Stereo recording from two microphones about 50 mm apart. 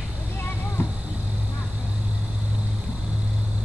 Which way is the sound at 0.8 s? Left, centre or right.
Left.